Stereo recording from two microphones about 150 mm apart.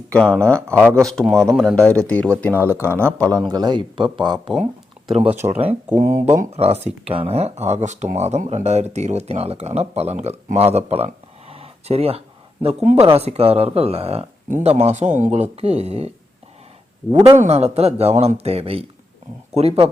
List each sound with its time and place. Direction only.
0.1 s speech: 5° left (ahead or behind)
2.6 s speech: 15° right (ahead or behind)
3.2 s speech: 25° right (ahead or behind)
5.4 s speech: 45° right (ahead or behind)
6.1 s speech: 15° right (ahead or behind)
6.4 s speech: 45° right (ahead or behind)
17.3 s speech: 50° right (ahead or behind)